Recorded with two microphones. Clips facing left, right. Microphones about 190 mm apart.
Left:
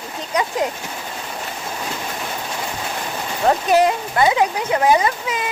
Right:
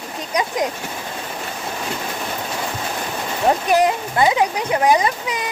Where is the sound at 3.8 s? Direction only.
20° right (ahead or behind).